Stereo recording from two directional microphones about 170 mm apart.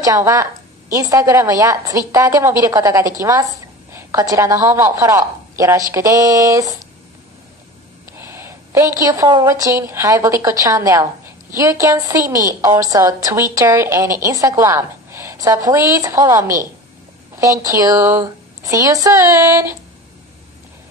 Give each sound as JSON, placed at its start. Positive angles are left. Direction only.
{"t": 0.0, "sound": "a woman's voice", "side_deg": -20}
{"t": 8.2, "sound": "a woman's voice", "side_deg": -15}